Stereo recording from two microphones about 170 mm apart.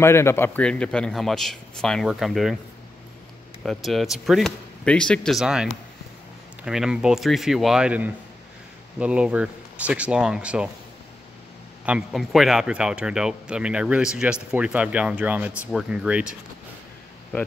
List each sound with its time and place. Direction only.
0.0 s speech: 15° left (ahead or behind); by 2.5 s centre (ahead or behind)
3.6 s speech: centre (ahead or behind)
11.8 s speech: 5° right (ahead or behind)